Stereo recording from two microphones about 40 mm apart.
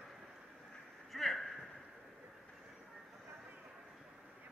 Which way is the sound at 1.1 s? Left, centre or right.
Centre.